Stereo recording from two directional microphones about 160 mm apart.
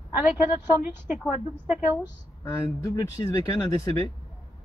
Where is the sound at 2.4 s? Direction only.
15° left (ahead or behind).